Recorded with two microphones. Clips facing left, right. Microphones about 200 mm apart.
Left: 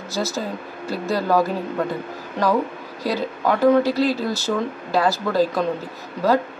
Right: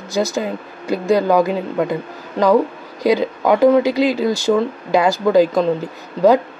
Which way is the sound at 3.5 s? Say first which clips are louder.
Right 4 dB; 15° right (ahead or behind).